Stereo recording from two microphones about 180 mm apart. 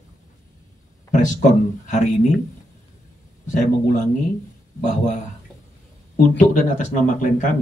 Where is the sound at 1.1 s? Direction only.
45° left (ahead or behind).